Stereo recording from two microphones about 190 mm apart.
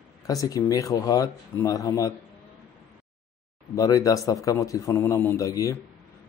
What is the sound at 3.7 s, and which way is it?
Speech, 15° left (ahead or behind).